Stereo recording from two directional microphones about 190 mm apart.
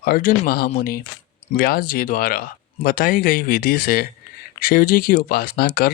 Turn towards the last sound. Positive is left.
turn(degrees=50)  # may be behind; listen again after turning